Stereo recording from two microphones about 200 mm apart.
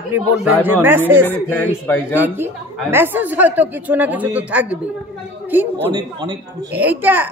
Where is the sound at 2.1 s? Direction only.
10° right (ahead or behind).